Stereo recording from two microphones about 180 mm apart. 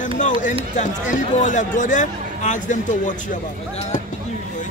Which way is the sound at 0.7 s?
45° left (ahead or behind).